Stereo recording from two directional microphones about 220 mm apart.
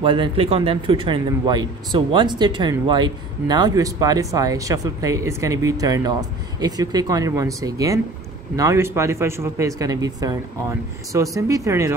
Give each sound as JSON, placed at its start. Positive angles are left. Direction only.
{"t": 0.0, "sound": "speech", "side_deg": -25}